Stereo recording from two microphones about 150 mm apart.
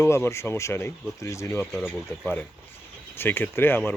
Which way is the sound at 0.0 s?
15° left (ahead or behind).